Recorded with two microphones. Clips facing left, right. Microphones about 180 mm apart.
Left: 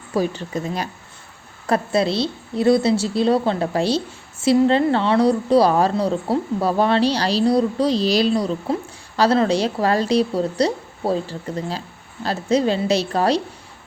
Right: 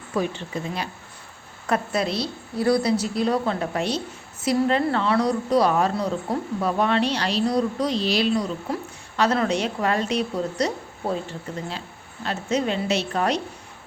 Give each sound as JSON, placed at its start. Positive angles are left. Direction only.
{"t": 0.1, "sound": "a woman's voice", "side_deg": 35}